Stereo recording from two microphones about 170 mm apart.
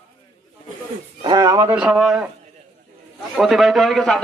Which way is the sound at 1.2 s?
25° right (ahead or behind).